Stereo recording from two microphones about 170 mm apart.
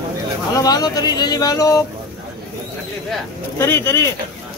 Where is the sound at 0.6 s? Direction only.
20° left (ahead or behind).